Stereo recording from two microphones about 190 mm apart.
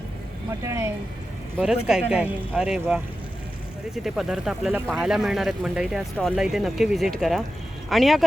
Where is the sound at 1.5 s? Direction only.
5° right (ahead or behind).